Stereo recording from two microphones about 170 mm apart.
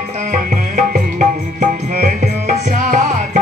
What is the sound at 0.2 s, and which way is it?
Music, 50° right (ahead or behind).